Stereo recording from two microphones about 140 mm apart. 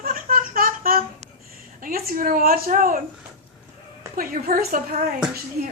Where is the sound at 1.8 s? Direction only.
90° right.